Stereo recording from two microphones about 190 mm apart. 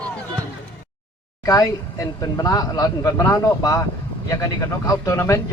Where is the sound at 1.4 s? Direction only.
20° left (ahead or behind).